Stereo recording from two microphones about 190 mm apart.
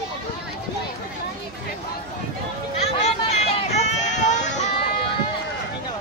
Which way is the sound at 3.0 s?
35° left (ahead or behind).